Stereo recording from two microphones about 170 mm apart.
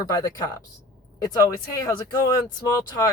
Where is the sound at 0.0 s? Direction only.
20° left (ahead or behind).